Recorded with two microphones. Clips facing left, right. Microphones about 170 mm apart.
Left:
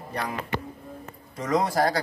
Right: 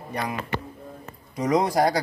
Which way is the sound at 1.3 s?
15° right (ahead or behind).